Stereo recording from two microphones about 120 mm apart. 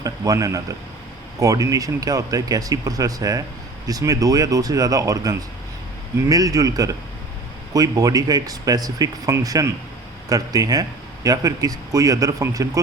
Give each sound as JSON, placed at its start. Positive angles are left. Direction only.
{"t": 0.0, "sound": "speech", "side_deg": -30}